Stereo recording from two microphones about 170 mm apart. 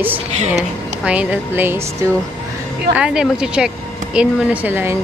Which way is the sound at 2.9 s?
5° right (ahead or behind).